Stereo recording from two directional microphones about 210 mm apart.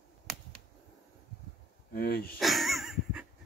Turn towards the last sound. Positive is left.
turn(degrees=-5)  # may be behind; listen again after turning